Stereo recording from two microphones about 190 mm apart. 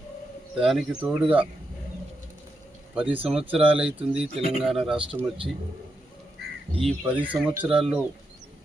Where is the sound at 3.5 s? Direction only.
30° right (ahead or behind).